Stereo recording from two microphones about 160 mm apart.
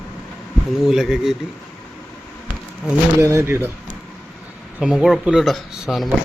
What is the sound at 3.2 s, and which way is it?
Speech, 15° right (ahead or behind).